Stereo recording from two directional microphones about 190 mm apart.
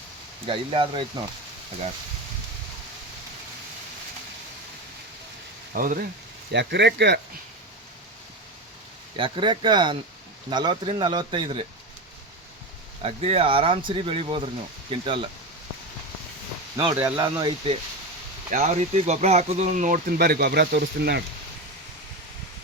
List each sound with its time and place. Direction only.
0.4 s speech: 30° right (ahead or behind)
5.7 s speech: 45° right (ahead or behind)
6.5 s speech: 65° right (ahead or behind)
9.1 s speech: 25° right (ahead or behind)
13.0 s speech: 30° right (ahead or behind)
16.7 s speech: 15° right (ahead or behind)
18.5 s speech: 35° right (ahead or behind); by 21.2 s 60° right (ahead or behind)